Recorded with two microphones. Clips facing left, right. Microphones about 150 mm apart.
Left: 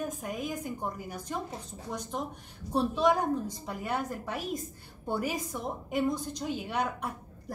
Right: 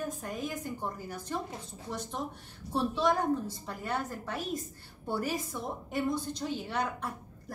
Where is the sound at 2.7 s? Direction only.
15° left (ahead or behind).